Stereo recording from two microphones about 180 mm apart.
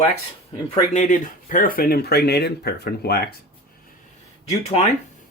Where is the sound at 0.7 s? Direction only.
45° left (ahead or behind); by 3.2 s 60° left (ahead or behind).